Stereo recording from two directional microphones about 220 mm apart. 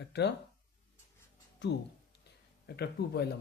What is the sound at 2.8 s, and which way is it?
Speech, 45° left (ahead or behind).